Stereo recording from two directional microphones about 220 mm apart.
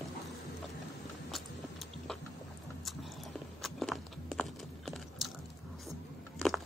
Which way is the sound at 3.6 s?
Centre (ahead or behind).